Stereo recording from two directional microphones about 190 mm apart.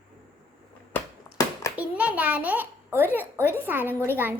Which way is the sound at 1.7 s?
5° right (ahead or behind).